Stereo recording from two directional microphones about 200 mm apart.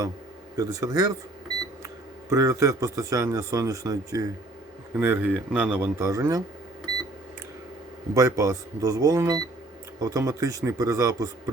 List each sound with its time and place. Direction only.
0.5 s speech: 15° right (ahead or behind)
2.3 s speech: 15° right (ahead or behind)
8.1 s speech: 15° right (ahead or behind)